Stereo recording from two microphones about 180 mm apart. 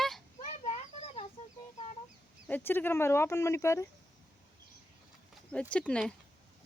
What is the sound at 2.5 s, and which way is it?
Speech, 10° left (ahead or behind).